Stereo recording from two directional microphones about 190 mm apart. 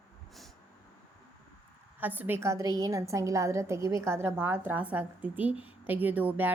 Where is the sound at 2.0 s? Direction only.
10° right (ahead or behind).